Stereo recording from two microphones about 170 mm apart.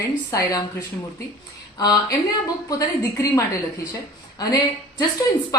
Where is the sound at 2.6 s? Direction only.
20° left (ahead or behind).